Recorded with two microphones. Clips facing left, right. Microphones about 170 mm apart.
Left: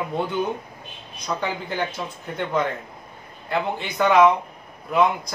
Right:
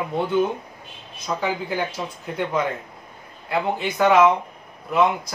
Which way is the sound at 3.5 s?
5° right (ahead or behind).